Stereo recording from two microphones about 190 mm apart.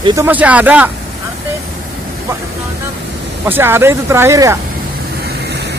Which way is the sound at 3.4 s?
10° right (ahead or behind).